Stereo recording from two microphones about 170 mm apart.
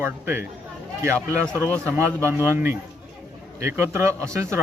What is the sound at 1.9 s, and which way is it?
Speech, 15° right (ahead or behind).